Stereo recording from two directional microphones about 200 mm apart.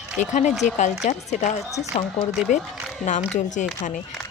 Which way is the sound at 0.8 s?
35° left (ahead or behind).